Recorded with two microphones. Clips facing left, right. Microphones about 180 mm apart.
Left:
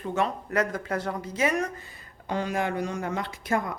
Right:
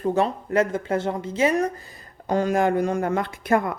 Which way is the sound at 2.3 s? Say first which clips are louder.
Right 7 dB; 45° right (ahead or behind).